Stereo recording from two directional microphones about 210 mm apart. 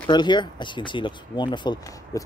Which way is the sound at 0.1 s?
20° left (ahead or behind).